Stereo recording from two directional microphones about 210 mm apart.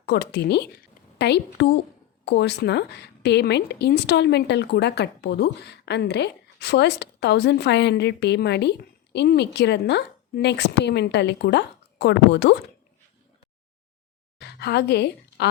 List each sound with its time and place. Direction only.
0.0 s a woman's voice: 50° left (ahead or behind)
14.4 s a woman's voice: 50° left (ahead or behind)